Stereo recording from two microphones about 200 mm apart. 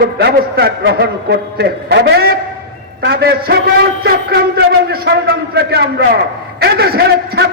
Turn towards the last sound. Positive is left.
turn(degrees=-50)  # may be behind; listen again after turning